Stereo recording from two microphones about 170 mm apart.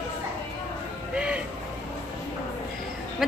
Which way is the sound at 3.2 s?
Centre (ahead or behind).